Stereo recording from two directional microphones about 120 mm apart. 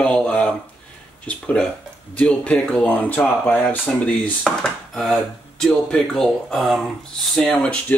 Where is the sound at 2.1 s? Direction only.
10° left (ahead or behind).